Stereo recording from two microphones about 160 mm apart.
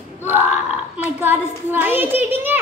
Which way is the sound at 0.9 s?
10° right (ahead or behind).